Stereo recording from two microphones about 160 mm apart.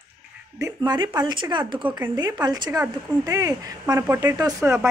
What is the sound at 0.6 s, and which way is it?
A woman's voice, 25° right (ahead or behind).